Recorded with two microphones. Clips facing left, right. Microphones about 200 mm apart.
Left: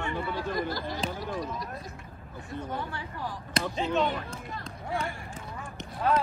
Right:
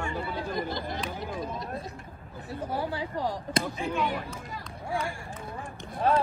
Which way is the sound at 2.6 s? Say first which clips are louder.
Right 8 dB; 35° right (ahead or behind).